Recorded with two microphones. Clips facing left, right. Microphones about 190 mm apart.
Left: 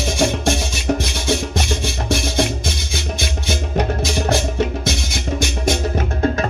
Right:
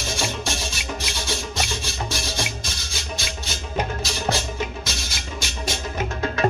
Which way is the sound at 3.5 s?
60° left (ahead or behind).